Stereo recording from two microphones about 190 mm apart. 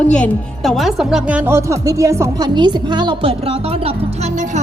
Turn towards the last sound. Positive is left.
turn(degrees=-30)  # may be behind; listen again after turning